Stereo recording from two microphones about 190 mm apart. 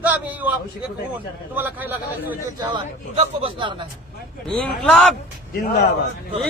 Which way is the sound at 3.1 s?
30° right (ahead or behind).